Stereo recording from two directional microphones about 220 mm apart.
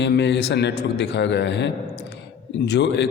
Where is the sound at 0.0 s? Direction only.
50° left (ahead or behind).